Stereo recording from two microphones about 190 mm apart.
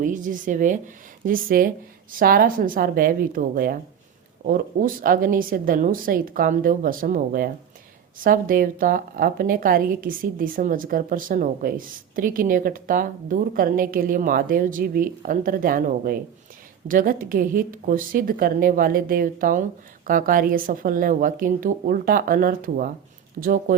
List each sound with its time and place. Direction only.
0.0 s a woman's voice: 45° right (ahead or behind)